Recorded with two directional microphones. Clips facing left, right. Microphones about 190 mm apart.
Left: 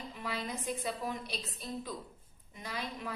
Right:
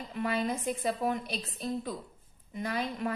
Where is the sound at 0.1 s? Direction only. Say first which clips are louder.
Right 10 dB; 55° right (ahead or behind).